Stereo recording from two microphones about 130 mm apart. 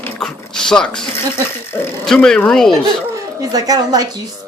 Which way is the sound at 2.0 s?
5° left (ahead or behind).